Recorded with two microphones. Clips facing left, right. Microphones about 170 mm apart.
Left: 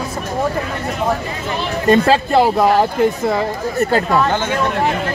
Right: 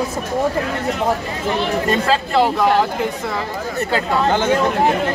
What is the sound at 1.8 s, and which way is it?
Speech, 50° left (ahead or behind).